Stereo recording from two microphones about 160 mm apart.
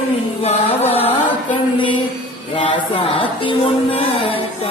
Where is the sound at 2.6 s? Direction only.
30° left (ahead or behind).